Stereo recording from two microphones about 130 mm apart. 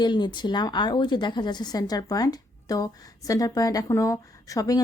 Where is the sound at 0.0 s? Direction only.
35° left (ahead or behind).